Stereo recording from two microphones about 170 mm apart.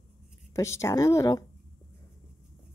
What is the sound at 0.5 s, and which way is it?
Speech, 15° left (ahead or behind).